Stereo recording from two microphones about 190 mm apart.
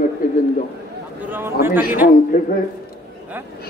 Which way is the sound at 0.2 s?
45° left (ahead or behind).